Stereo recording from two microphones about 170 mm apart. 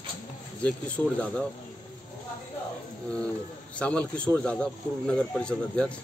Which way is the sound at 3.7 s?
10° left (ahead or behind).